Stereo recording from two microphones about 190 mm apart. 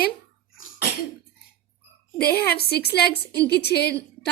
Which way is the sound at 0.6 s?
65° left (ahead or behind).